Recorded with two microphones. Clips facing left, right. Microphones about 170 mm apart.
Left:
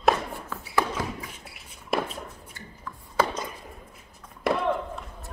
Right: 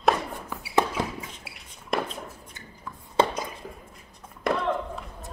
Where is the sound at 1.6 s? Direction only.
5° left (ahead or behind).